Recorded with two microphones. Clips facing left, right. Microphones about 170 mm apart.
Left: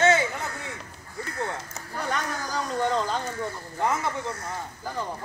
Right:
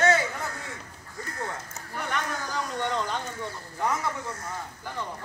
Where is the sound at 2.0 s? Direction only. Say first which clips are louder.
Left 2 dB; 35° left (ahead or behind).